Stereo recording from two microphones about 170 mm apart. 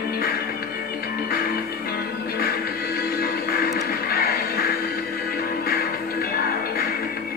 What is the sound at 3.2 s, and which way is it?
Music, 60° left (ahead or behind).